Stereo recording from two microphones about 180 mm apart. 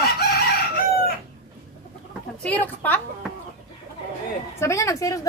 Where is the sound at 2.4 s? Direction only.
10° left (ahead or behind).